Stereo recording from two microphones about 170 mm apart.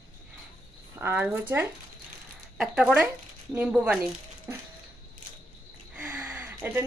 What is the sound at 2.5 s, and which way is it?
Speech, 5° right (ahead or behind).